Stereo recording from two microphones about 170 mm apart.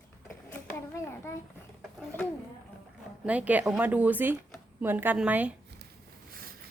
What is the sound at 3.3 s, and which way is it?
A woman's voice, 10° right (ahead or behind).